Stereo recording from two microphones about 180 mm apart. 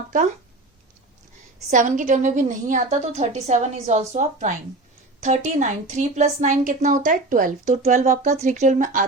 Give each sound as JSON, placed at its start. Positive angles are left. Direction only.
{"t": 1.7, "sound": "a woman's voice", "side_deg": -45}